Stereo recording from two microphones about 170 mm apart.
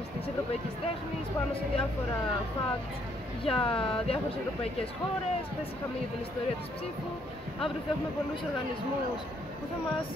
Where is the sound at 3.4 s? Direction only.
30° left (ahead or behind).